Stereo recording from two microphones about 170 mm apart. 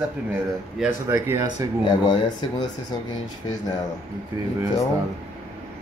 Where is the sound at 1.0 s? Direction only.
15° right (ahead or behind).